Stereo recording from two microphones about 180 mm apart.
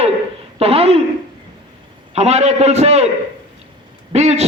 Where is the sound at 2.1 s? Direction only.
35° right (ahead or behind).